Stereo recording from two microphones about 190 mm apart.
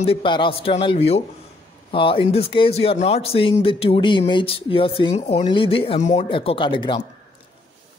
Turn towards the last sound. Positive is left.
turn(degrees=25)  # may be behind; listen again after turning